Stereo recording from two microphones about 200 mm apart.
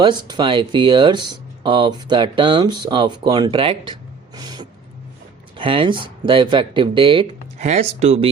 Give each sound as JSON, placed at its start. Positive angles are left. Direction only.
{"t": 0.0, "sound": "speech", "side_deg": -20}
{"t": 4.4, "sound": "cat", "side_deg": -20}
{"t": 5.5, "sound": "speech", "side_deg": -25}